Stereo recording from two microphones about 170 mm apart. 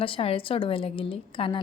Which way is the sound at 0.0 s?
35° left (ahead or behind).